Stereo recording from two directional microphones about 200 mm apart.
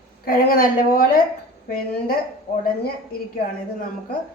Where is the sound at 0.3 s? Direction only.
45° left (ahead or behind).